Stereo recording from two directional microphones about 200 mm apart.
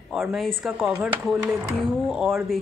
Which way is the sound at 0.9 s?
10° right (ahead or behind).